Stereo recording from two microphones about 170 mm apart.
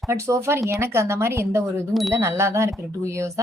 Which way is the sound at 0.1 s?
15° right (ahead or behind).